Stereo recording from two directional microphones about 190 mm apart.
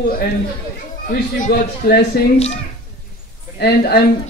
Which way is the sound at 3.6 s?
55° left (ahead or behind).